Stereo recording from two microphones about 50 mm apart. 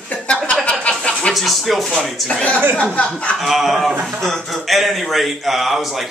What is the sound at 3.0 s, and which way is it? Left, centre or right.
Speech, left.